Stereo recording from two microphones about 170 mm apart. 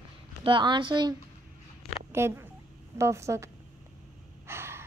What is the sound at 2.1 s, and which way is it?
A woman's voice, 15° right (ahead or behind).